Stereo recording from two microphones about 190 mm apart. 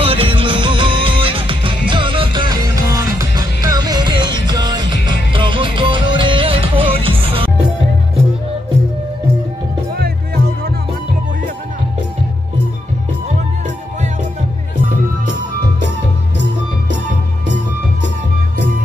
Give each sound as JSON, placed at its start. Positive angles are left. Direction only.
{"t": 0.0, "sound": "music", "side_deg": -30}
{"t": 9.9, "sound": "music", "side_deg": -55}